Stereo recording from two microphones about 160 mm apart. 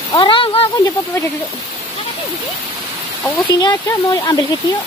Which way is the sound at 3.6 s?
25° left (ahead or behind).